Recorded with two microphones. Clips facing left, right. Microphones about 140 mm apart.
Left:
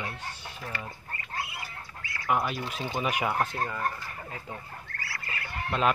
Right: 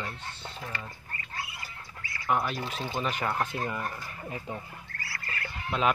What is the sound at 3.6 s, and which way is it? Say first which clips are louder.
Speech: left 2 dB; 15° right (ahead or behind).